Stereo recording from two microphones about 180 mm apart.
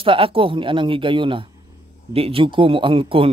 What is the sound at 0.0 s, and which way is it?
Speech, 30° right (ahead or behind).